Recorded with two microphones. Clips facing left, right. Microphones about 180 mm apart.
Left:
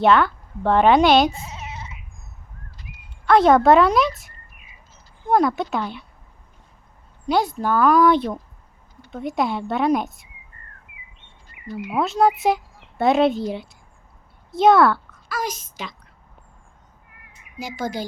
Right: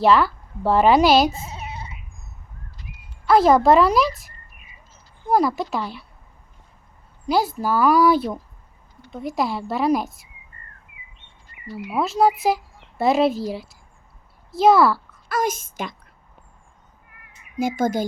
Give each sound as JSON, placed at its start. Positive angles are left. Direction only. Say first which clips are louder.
{"t": 0.0, "sound": "speech", "louder": "even", "side_deg": 0}
{"t": 3.2, "sound": "speech", "louder": "left 1 dB", "side_deg": 0}
{"t": 5.3, "sound": "speech", "louder": "left 1 dB", "side_deg": -5}
{"t": 7.3, "sound": "speech", "louder": "even", "side_deg": -5}
{"t": 11.5, "sound": "a sound", "louder": "right 3 dB", "side_deg": 90}
{"t": 11.9, "sound": "speech", "louder": "even", "side_deg": 0}
{"t": 15.3, "sound": "a woman's voice", "louder": "right 5 dB", "side_deg": -50}
{"t": 17.6, "sound": "a woman's voice", "louder": "right 7 dB", "side_deg": -50}